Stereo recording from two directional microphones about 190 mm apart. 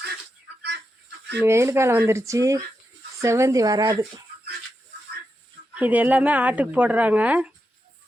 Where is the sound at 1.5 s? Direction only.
15° right (ahead or behind).